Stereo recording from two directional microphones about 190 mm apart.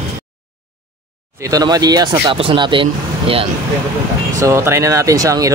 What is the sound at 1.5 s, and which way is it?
Speech, 20° right (ahead or behind).